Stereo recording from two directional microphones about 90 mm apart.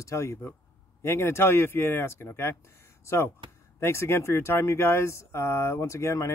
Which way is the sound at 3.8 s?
30° left (ahead or behind).